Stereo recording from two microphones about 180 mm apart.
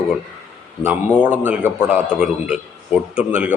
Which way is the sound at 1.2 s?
10° right (ahead or behind).